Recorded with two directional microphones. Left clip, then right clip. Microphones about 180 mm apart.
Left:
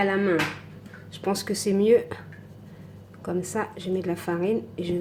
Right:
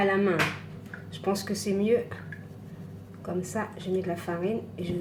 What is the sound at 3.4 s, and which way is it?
A woman's voice, 50° left (ahead or behind).